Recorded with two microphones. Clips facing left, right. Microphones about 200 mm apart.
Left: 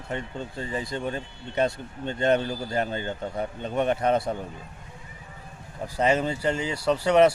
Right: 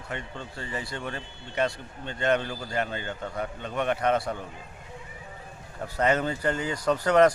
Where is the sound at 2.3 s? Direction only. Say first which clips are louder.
Left 2 dB; 40° left (ahead or behind).